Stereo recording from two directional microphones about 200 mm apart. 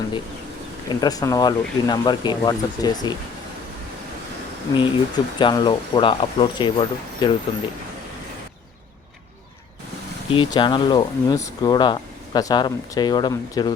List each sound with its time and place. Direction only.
1.0 s speech: 20° left (ahead or behind)
4.8 s speech: 25° left (ahead or behind)
10.2 s speech: 25° left (ahead or behind)